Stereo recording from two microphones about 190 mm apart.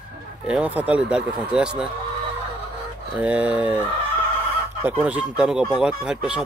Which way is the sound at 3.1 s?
5° right (ahead or behind).